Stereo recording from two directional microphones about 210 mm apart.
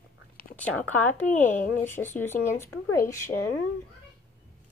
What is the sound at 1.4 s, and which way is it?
Speech, 35° left (ahead or behind).